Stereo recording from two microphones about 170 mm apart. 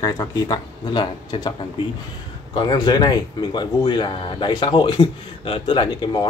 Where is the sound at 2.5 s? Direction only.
25° left (ahead or behind).